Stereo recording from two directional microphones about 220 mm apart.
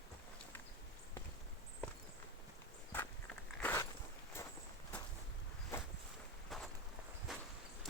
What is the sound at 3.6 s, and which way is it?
Biting, 10° left (ahead or behind).